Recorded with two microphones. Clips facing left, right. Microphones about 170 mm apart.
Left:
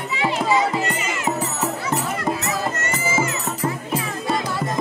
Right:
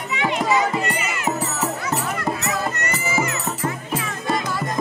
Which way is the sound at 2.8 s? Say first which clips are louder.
Left 1 dB; 25° left (ahead or behind).